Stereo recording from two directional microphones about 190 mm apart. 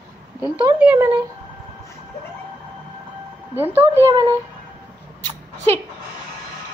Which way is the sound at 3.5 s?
10° right (ahead or behind).